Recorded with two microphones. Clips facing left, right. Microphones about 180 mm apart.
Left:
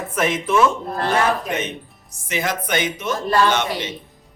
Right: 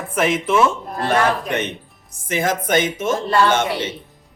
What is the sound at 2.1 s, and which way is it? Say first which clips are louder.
A man's voice: right 3 dB; 50° right (ahead or behind).